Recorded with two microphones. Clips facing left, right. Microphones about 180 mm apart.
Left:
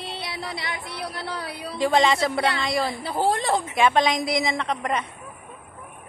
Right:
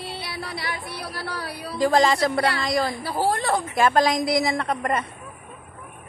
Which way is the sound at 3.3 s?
25° left (ahead or behind).